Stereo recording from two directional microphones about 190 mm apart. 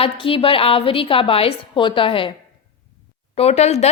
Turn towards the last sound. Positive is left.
turn(degrees=35)  # may be behind; listen again after turning